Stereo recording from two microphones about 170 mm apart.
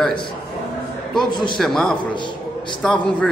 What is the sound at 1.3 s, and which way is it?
Speech, 25° left (ahead or behind).